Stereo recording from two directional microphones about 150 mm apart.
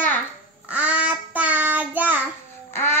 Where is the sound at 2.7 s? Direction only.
15° left (ahead or behind).